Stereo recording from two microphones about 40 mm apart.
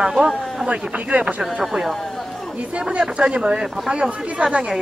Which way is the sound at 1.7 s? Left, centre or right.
Centre.